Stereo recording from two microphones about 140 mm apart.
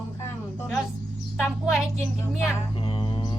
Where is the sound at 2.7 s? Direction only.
40° left (ahead or behind).